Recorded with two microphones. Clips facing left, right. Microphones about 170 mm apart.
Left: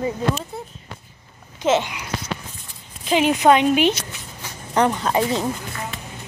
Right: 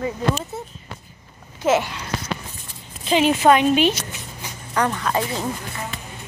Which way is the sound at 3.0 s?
10° left (ahead or behind).